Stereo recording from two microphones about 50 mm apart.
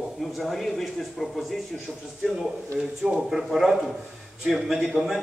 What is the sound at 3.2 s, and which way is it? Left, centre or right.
A man's voice, centre.